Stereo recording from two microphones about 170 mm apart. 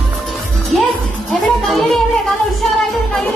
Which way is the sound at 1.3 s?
Centre (ahead or behind).